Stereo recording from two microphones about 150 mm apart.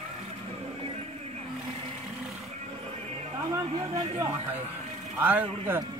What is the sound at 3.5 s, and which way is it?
A man's voice, 20° right (ahead or behind).